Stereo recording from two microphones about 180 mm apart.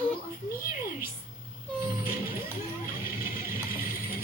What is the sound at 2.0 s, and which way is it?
Music, 55° left (ahead or behind).